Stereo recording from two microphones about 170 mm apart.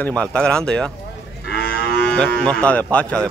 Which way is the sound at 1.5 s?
70° left (ahead or behind).